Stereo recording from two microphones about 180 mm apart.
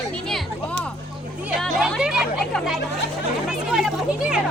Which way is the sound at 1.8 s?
5° right (ahead or behind).